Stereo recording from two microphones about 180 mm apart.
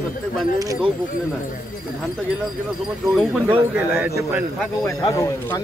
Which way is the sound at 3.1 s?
Centre (ahead or behind).